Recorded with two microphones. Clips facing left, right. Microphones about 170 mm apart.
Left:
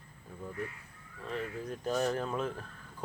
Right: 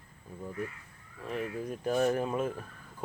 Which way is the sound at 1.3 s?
10° right (ahead or behind).